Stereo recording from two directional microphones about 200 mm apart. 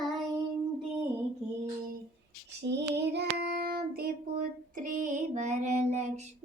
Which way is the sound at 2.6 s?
60° right (ahead or behind).